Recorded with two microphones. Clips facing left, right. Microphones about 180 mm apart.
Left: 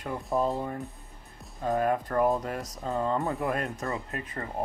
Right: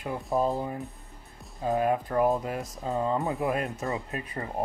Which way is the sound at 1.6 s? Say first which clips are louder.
Right 1 dB; 10° right (ahead or behind).